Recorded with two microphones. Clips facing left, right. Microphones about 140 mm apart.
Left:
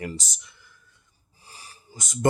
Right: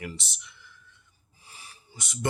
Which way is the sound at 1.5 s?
40° left (ahead or behind).